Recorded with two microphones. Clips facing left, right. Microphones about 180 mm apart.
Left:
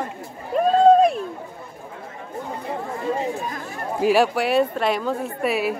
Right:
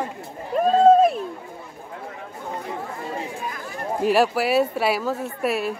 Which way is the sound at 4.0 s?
Centre (ahead or behind).